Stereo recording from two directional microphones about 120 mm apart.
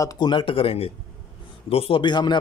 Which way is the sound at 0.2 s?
40° left (ahead or behind).